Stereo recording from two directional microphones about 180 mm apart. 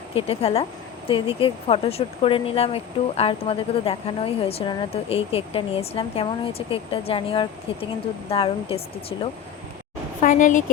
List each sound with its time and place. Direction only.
0.1 s speech: 30° left (ahead or behind)
10.2 s a woman's voice: 45° left (ahead or behind)